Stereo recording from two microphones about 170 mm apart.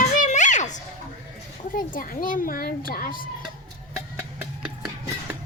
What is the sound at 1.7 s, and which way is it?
A child's voice, 55° left (ahead or behind).